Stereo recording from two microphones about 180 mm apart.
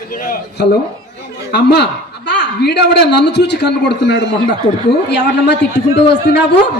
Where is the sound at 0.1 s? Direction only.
50° left (ahead or behind).